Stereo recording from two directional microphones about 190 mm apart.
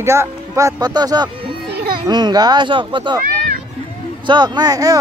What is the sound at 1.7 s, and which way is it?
Children playing, 55° right (ahead or behind).